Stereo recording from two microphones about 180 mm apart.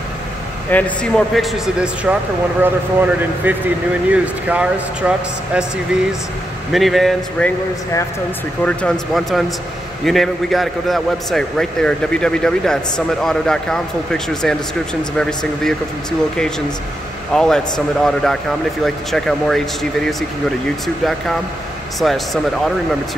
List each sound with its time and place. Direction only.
0.7 s a man's voice: 10° left (ahead or behind)
6.7 s a man's voice: centre (ahead or behind)
8.6 s a man's voice: 5° left (ahead or behind)
17.3 s a man's voice: 5° left (ahead or behind)